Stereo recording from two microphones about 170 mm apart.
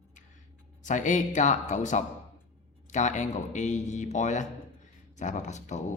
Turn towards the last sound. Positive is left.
turn(degrees=45)  # may be behind; listen again after turning